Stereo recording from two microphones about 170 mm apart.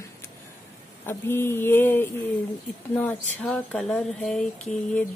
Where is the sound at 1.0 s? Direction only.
15° left (ahead or behind).